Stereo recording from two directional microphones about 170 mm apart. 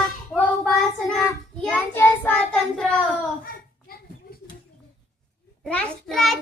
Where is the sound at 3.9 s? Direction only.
60° left (ahead or behind).